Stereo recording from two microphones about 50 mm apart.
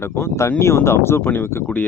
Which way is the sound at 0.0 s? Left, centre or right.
Left.